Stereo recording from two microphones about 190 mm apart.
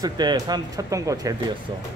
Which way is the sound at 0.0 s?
20° right (ahead or behind).